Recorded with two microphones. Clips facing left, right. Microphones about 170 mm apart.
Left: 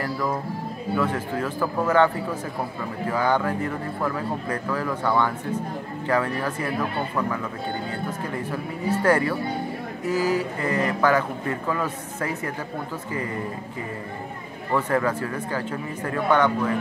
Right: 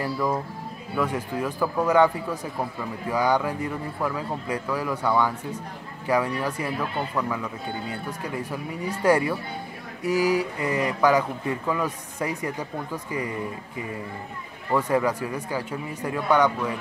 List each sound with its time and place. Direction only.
0.9 s speech: 10° right (ahead or behind)
3.1 s speech: 10° right (ahead or behind)
9.0 s speech: 10° right (ahead or behind)
14.7 s speech: 10° right (ahead or behind)